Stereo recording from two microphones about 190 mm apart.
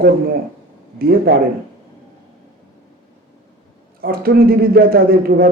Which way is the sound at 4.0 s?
55° right (ahead or behind).